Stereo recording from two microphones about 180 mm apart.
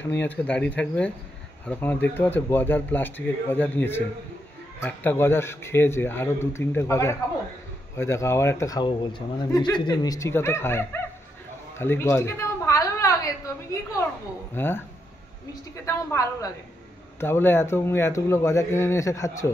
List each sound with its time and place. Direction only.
0.2 s a man's voice: 10° left (ahead or behind)
11.8 s a sound: 15° left (ahead or behind)
14.5 s a man's voice: 10° left (ahead or behind)